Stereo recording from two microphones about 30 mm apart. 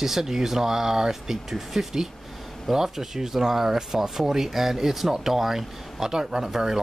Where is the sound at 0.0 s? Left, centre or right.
Centre.